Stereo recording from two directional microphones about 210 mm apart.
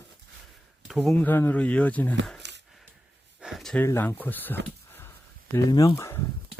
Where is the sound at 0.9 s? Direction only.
Centre (ahead or behind).